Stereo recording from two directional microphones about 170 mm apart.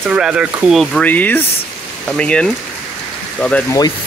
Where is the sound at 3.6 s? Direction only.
20° left (ahead or behind).